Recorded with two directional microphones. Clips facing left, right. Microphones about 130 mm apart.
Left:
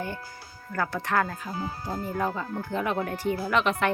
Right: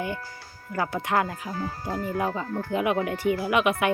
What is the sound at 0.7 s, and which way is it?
Speech, 15° right (ahead or behind).